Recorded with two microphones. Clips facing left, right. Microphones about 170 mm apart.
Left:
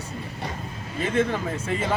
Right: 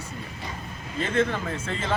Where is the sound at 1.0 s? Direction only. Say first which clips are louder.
Left 1 dB; 15° left (ahead or behind).